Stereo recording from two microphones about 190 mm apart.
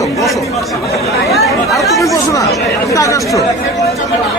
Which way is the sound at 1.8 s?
15° left (ahead or behind).